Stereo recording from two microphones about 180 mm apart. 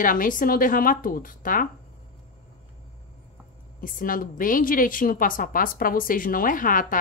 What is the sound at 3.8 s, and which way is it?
A woman's voice, 50° left (ahead or behind).